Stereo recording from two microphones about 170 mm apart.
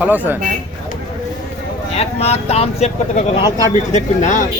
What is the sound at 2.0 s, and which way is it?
Speech, 35° left (ahead or behind).